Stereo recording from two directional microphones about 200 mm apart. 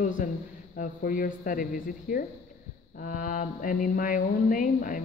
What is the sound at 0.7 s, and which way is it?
Mantra, 45° left (ahead or behind).